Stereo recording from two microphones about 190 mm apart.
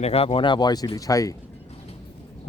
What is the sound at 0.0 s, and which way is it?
Speech, 35° left (ahead or behind).